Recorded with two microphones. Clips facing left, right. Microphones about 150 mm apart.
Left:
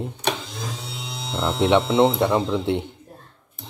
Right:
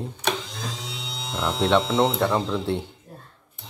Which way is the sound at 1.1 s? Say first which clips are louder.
Left 2 dB; 5° left (ahead or behind).